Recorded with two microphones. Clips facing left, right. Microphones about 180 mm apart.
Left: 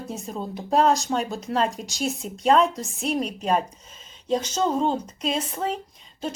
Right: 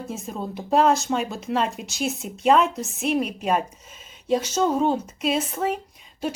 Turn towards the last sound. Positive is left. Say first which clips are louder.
# right 3 dB
turn(degrees=-10)  # may be behind; listen again after turning